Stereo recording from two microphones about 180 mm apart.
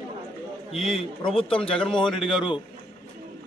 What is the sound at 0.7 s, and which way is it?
Speech, centre (ahead or behind).